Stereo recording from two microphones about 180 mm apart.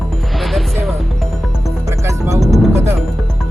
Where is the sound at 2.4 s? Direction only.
Centre (ahead or behind).